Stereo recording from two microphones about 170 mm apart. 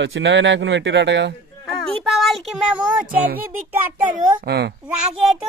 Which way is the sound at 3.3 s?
10° right (ahead or behind).